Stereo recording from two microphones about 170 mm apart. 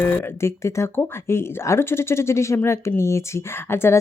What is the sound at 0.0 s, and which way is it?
Speech, 15° left (ahead or behind).